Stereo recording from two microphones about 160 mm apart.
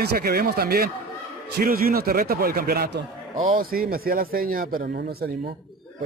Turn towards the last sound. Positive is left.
turn(degrees=-65)  # may be behind; listen again after turning